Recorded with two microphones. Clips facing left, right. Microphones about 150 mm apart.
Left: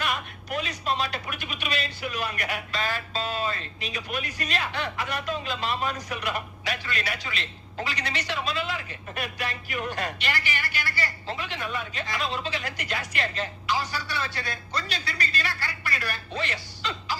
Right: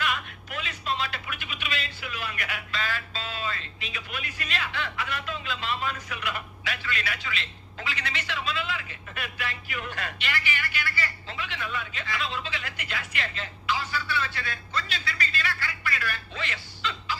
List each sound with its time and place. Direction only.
0.0 s speech: 40° left (ahead or behind)